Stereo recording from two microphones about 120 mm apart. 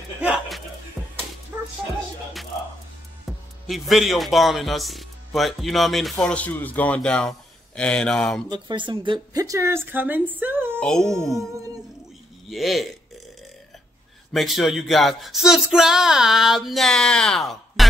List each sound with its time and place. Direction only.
1.0 s music: centre (ahead or behind)
1.5 s music: 15° right (ahead or behind)
3.3 s music: centre (ahead or behind)
3.6 s a man's voice: centre (ahead or behind)
8.5 s speech: 40° right (ahead or behind)
9.4 s speech: 25° right (ahead or behind)
10.8 s a man's voice: 5° left (ahead or behind)
12.4 s a man's voice: centre (ahead or behind)
14.3 s a man's voice: centre (ahead or behind)